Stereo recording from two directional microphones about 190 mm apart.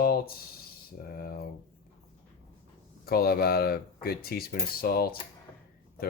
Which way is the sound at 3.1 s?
55° left (ahead or behind).